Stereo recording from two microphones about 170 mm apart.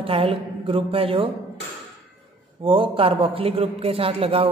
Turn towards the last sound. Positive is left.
turn(degrees=-35)  # may be behind; listen again after turning